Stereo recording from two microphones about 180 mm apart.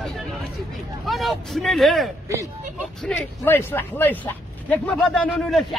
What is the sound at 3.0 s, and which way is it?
A man's voice, 10° left (ahead or behind).